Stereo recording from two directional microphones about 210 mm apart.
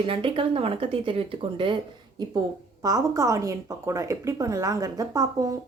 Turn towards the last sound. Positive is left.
turn(degrees=-15)  # may be behind; listen again after turning